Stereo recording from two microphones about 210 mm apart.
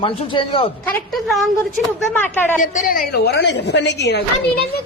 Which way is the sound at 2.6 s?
40° left (ahead or behind).